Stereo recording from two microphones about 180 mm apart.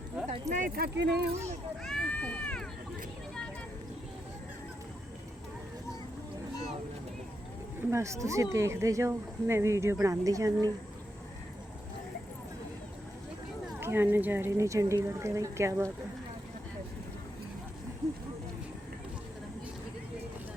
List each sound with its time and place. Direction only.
0.3 s speech: 40° right (ahead or behind)
0.8 s speech: 65° right (ahead or behind)
1.8 s run: 5° left (ahead or behind)
7.8 s speech: 15° right (ahead or behind)
13.7 s speech: 10° right (ahead or behind)